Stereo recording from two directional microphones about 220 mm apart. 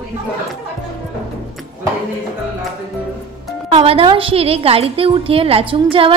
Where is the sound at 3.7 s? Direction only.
25° right (ahead or behind).